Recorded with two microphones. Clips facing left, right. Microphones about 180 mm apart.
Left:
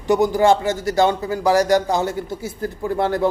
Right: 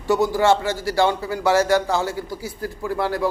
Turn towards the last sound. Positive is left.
turn(degrees=20)  # may be behind; listen again after turning